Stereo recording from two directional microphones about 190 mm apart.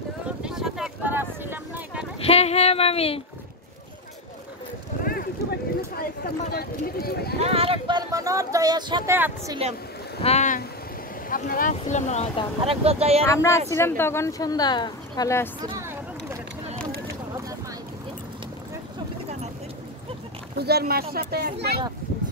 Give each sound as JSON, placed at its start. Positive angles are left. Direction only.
{"t": 0.4, "sound": "a sound", "side_deg": -5}
{"t": 2.2, "sound": "speech", "side_deg": 35}
{"t": 5.0, "sound": "a sound", "side_deg": 50}
{"t": 5.8, "sound": "speech", "side_deg": 55}
{"t": 7.3, "sound": "speech", "side_deg": -30}
{"t": 9.1, "sound": "speech", "side_deg": -10}
{"t": 10.2, "sound": "speech", "side_deg": 35}
{"t": 11.2, "sound": "speech", "side_deg": 45}
{"t": 12.6, "sound": "speech", "side_deg": -30}
{"t": 13.3, "sound": "speech", "side_deg": 15}
{"t": 15.6, "sound": "a sound", "side_deg": -15}
{"t": 20.5, "sound": "speech", "side_deg": -55}